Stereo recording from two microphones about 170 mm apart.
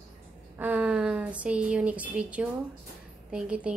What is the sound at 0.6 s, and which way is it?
A woman's voice, 10° right (ahead or behind).